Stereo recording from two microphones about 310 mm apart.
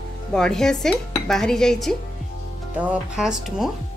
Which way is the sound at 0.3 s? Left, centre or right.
Centre.